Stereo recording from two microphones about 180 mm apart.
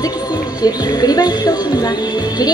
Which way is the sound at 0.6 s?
20° left (ahead or behind).